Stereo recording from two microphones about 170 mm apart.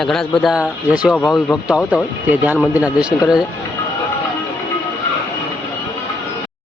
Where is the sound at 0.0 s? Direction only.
Centre (ahead or behind).